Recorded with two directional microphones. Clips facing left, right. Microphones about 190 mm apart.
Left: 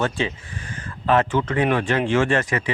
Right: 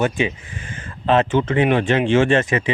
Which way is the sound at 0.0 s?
15° right (ahead or behind).